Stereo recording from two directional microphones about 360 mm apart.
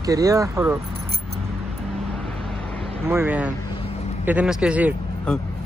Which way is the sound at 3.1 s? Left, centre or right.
Centre.